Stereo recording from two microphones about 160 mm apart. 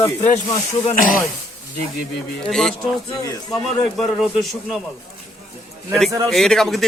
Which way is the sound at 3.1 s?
20° left (ahead or behind).